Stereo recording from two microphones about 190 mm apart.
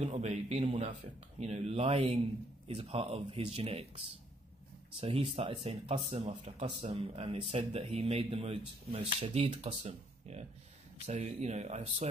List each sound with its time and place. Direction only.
0.0 s speech: 35° right (ahead or behind)
5.0 s speech: 30° right (ahead or behind)